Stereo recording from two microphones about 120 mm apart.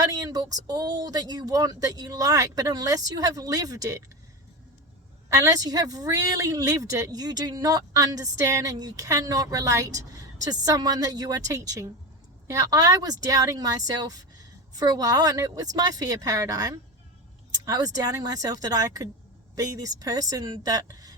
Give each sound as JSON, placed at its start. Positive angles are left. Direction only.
{"t": 0.0, "sound": "speech", "side_deg": -30}
{"t": 5.4, "sound": "speech", "side_deg": -30}